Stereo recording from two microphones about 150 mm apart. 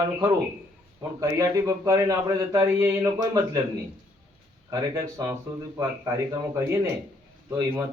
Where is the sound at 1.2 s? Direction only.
25° right (ahead or behind).